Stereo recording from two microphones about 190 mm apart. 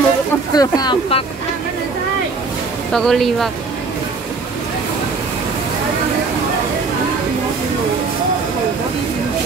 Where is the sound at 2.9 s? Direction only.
Centre (ahead or behind).